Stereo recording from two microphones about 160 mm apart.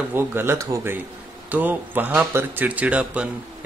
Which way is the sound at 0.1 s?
15° right (ahead or behind).